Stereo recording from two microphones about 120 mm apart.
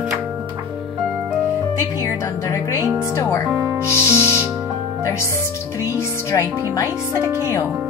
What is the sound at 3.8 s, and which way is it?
Music, 15° right (ahead or behind).